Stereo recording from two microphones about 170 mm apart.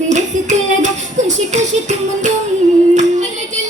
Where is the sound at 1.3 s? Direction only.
45° right (ahead or behind).